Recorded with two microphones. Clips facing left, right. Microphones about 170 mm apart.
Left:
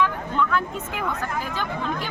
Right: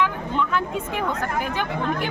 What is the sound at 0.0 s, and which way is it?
Vehicle, 20° right (ahead or behind).